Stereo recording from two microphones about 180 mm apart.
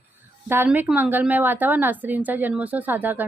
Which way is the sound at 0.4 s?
10° right (ahead or behind).